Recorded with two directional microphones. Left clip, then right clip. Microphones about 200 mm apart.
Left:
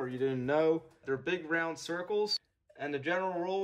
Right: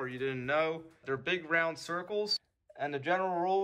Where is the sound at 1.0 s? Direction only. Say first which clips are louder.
Right 2 dB; 10° left (ahead or behind).